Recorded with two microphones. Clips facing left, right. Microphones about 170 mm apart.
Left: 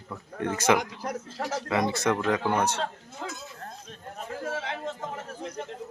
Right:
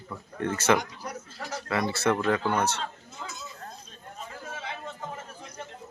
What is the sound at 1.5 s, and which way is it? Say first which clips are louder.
Speech: left 2 dB; 20° left (ahead or behind).